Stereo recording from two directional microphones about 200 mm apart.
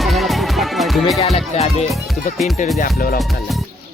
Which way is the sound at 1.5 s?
30° left (ahead or behind).